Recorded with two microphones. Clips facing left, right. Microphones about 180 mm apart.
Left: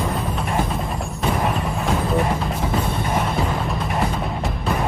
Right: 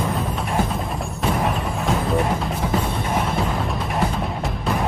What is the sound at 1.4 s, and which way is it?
Music, centre (ahead or behind).